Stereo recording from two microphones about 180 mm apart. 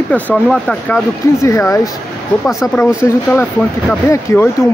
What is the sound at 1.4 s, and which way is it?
Speech, 15° left (ahead or behind).